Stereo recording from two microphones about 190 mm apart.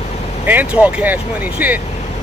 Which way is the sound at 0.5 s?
10° right (ahead or behind).